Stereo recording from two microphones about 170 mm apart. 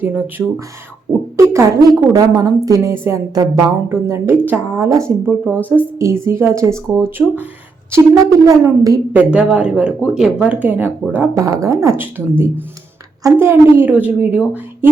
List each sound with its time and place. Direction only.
0.0 s speech: 10° right (ahead or behind)
1.1 s a sound: 20° right (ahead or behind)
1.5 s a woman's voice: 20° right (ahead or behind)
5.5 s speech: 10° left (ahead or behind)
6.2 s a woman's voice: 15° right (ahead or behind)
9.1 s speech: 5° right (ahead or behind)
13.2 s speech: 15° right (ahead or behind)